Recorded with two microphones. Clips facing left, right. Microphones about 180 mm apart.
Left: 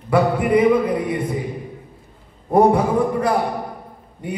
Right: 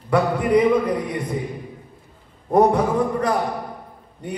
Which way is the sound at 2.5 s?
10° left (ahead or behind).